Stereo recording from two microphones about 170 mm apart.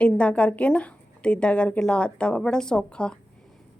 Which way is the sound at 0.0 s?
5° left (ahead or behind).